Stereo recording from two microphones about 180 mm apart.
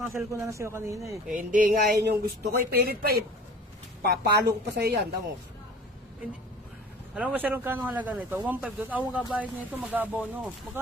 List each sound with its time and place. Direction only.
0.3 s speech: 15° right (ahead or behind)
1.3 s speech: 50° right (ahead or behind)
7.2 s speech: 10° right (ahead or behind)